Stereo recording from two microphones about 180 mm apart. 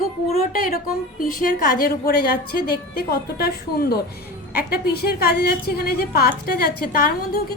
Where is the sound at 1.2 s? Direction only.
50° left (ahead or behind).